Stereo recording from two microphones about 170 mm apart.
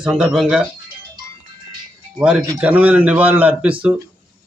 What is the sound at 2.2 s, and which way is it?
A man's voice, 5° right (ahead or behind).